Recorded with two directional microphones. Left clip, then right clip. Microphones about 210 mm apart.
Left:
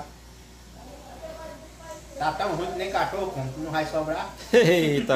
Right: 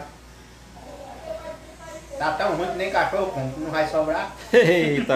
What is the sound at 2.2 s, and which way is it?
Speech, 10° right (ahead or behind).